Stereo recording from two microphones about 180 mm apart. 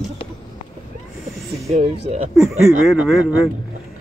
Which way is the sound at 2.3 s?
Centre (ahead or behind).